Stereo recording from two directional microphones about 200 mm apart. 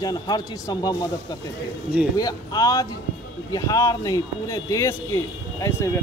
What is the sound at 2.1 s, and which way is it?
Speech, 20° left (ahead or behind).